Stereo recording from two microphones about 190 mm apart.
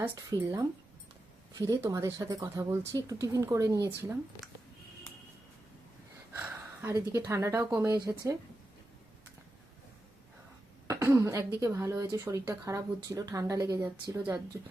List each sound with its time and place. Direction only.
0.0 s speech: 15° right (ahead or behind)
6.3 s a sound: 15° right (ahead or behind)
7.1 s speech: 15° right (ahead or behind)
10.8 s speech: 15° right (ahead or behind)